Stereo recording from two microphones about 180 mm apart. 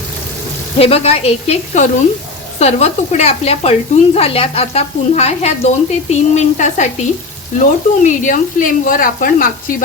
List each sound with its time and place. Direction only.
0.8 s speech: 35° left (ahead or behind); by 9.7 s 50° left (ahead or behind)